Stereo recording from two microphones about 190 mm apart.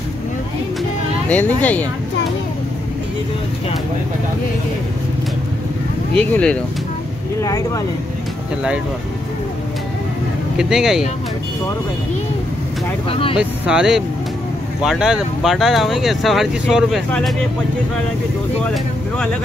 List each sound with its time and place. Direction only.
1.3 s speech: 10° left (ahead or behind)
6.1 s speech: 5° left (ahead or behind)
7.3 s speech: 15° left (ahead or behind)
10.6 s speech: centre (ahead or behind)
13.1 s speech: 30° left (ahead or behind)
13.4 s speech: 5° right (ahead or behind)